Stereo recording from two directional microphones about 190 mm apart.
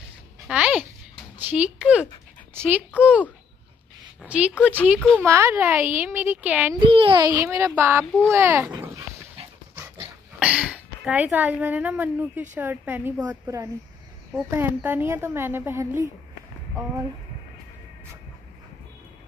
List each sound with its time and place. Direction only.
0.5 s a sound: 5° right (ahead or behind)
1.4 s speech: 5° right (ahead or behind)
4.3 s speech: 5° right (ahead or behind)
6.8 s speech: 30° right (ahead or behind)
8.0 s a child's voice: 5° left (ahead or behind)
8.3 s a sound: 10° right (ahead or behind)
10.4 s a woman's voice: 5° right (ahead or behind)